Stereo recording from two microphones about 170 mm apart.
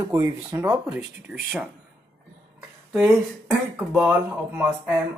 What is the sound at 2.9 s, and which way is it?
Speech, 5° right (ahead or behind).